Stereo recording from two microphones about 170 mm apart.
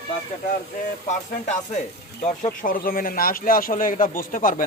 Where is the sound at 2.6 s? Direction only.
55° left (ahead or behind).